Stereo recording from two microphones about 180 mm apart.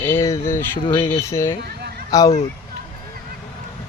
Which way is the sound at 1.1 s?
15° left (ahead or behind).